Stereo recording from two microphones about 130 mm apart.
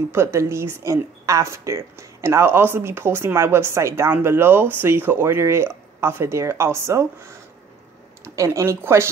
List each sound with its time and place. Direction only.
0.1 s speech: 20° right (ahead or behind)
8.2 s speech: 20° right (ahead or behind)